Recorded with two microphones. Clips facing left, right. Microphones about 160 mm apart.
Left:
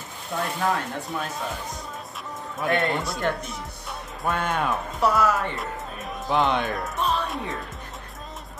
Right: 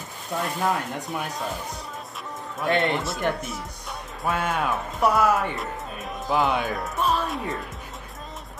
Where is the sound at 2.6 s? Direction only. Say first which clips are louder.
Right 1 dB; centre (ahead or behind).